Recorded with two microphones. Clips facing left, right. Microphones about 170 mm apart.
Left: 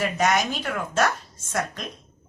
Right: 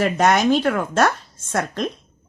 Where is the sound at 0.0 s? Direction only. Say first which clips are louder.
Right 6 dB; 60° right (ahead or behind).